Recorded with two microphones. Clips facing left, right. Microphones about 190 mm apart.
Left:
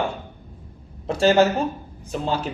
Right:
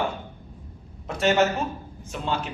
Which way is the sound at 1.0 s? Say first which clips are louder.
Left 4 dB; 30° left (ahead or behind).